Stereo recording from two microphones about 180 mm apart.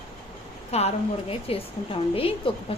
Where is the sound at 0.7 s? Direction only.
35° left (ahead or behind).